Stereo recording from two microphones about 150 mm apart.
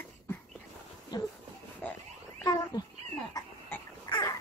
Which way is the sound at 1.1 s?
25° left (ahead or behind).